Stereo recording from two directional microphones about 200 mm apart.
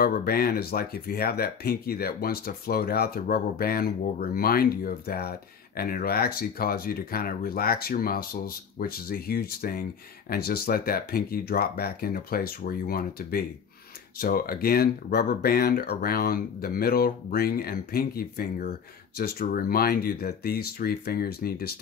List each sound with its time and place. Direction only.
0.0 s speech: 50° left (ahead or behind)